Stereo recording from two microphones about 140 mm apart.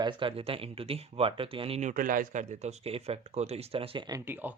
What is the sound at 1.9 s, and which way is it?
Speech, 80° right.